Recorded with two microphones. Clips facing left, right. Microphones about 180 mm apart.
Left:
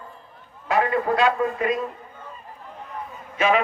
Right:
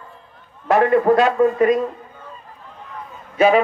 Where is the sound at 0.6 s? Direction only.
45° right (ahead or behind).